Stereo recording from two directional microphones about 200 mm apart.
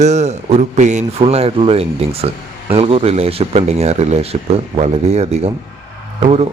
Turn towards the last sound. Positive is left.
turn(degrees=-30)  # may be behind; listen again after turning